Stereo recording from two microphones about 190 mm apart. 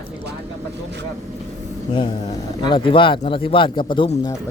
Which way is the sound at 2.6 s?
25° left (ahead or behind).